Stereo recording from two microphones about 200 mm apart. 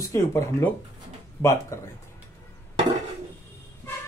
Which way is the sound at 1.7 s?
15° left (ahead or behind).